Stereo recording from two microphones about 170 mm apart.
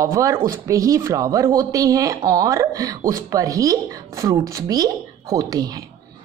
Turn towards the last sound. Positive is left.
turn(degrees=-25)  # may be behind; listen again after turning